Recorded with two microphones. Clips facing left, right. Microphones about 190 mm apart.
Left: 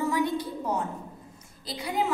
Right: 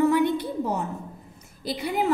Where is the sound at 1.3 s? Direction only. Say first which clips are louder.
Right 8 dB; 60° right (ahead or behind).